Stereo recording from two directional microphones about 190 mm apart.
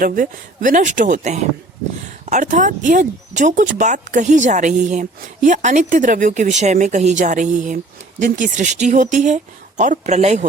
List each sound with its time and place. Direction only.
0.0 s speech: 45° right (ahead or behind)